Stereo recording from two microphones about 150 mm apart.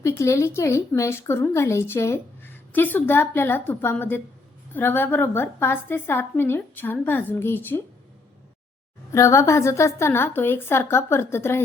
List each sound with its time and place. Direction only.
0.2 s a woman's voice: 20° left (ahead or behind)
9.1 s a woman's voice: 20° left (ahead or behind)